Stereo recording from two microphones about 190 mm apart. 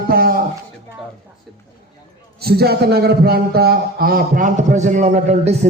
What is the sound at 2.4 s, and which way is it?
A man's voice, 55° right (ahead or behind).